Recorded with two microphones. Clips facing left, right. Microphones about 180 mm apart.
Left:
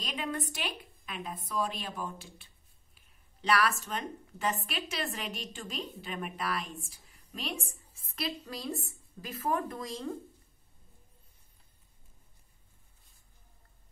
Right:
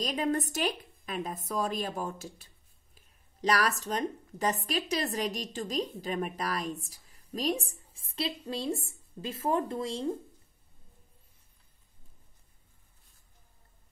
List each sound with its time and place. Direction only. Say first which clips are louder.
0.0 s a woman's voice: right 6 dB; 40° right (ahead or behind)